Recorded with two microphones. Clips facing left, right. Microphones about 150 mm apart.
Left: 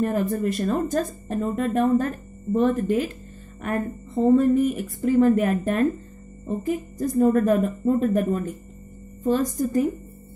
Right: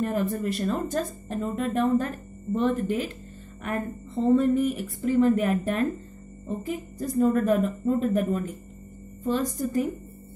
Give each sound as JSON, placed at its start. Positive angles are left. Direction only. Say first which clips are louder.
{"t": 0.0, "sound": "speech", "louder": "left 3 dB", "side_deg": 45}